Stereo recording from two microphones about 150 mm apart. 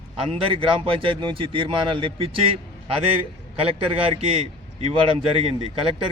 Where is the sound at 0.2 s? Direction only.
35° right (ahead or behind).